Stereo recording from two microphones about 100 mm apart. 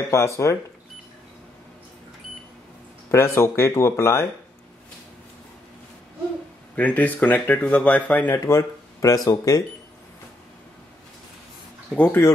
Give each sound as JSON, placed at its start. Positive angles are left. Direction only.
{"t": 0.1, "sound": "speech", "side_deg": 30}
{"t": 3.1, "sound": "speech", "side_deg": 25}
{"t": 6.7, "sound": "speech", "side_deg": 15}
{"t": 8.5, "sound": "speech", "side_deg": 35}
{"t": 11.9, "sound": "speech", "side_deg": 10}